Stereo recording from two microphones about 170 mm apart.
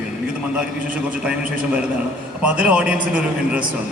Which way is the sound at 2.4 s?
5° right (ahead or behind).